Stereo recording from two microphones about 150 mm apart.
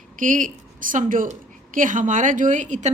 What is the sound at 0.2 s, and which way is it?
A woman's voice, 60° right (ahead or behind).